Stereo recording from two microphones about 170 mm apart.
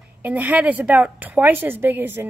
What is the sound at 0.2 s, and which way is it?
Speech, 10° right (ahead or behind).